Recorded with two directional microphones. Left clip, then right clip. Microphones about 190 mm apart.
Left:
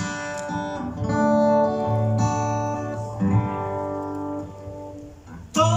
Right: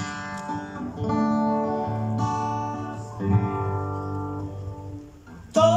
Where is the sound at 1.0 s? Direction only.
20° left (ahead or behind).